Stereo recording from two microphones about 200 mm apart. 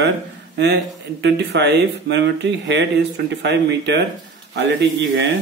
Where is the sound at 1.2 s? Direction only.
60° right (ahead or behind).